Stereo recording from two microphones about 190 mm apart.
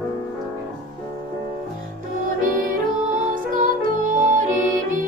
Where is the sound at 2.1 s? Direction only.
45° right (ahead or behind).